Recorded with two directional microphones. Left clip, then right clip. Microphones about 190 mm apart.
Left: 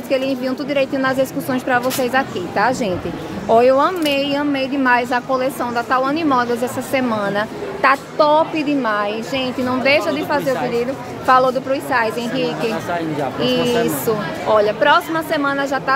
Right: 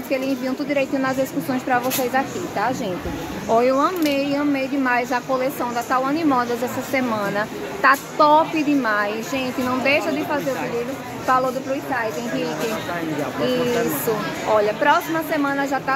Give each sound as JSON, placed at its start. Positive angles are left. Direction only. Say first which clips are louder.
{"t": 0.1, "sound": "speech", "louder": "left 4 dB", "side_deg": 15}